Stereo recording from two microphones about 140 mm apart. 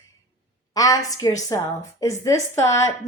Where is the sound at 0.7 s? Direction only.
25° left (ahead or behind).